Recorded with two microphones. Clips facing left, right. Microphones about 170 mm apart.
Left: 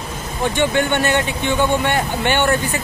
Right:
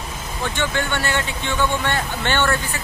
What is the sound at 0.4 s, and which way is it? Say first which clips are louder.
Speech: left 6 dB; 20° left (ahead or behind).